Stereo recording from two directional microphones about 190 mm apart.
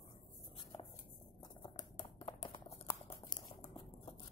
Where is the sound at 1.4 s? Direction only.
25° left (ahead or behind).